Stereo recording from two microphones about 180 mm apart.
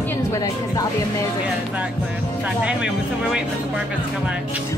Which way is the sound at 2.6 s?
5° right (ahead or behind).